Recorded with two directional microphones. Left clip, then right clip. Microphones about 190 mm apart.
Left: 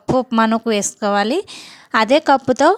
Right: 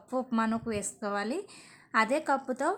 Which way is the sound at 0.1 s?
40° left (ahead or behind).